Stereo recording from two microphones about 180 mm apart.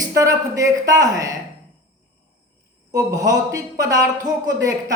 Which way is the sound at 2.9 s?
20° right (ahead or behind).